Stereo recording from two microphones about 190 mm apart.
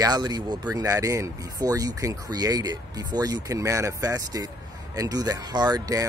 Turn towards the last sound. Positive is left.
turn(degrees=-20)  # may be behind; listen again after turning